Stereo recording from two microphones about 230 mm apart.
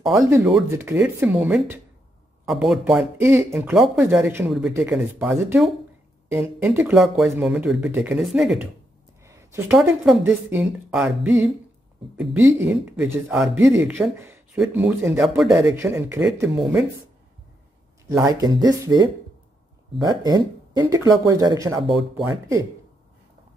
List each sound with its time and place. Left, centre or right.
0.7 s speech: centre
9.2 s a sound: centre
10.2 s speech: centre
18.0 s speech: centre